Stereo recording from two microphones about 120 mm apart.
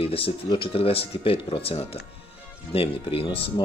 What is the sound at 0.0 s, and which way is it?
Speech, 50° left (ahead or behind).